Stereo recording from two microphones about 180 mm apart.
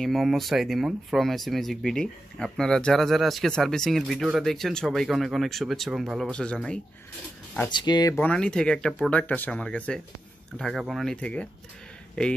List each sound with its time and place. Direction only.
0.0 s speech: centre (ahead or behind)
7.7 s speech: 25° left (ahead or behind)
8.2 s speech: 5° left (ahead or behind)